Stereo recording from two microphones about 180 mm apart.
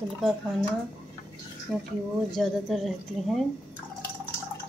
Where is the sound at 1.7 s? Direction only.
Centre (ahead or behind).